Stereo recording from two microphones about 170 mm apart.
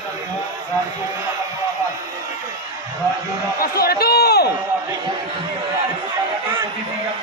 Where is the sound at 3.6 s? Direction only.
65° left (ahead or behind).